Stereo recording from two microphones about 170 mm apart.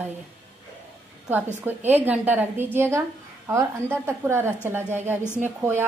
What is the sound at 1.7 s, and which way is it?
Speech, 10° right (ahead or behind).